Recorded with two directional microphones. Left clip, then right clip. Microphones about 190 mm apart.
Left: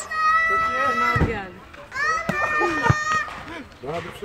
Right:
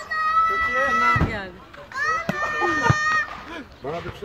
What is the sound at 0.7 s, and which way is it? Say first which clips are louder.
Run: right 1 dB; 5° right (ahead or behind).